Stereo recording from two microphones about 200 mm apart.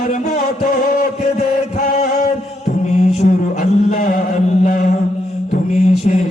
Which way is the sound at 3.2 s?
40° left (ahead or behind).